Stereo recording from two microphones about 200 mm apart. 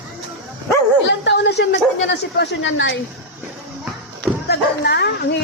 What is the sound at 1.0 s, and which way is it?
A woman's voice, 60° left (ahead or behind).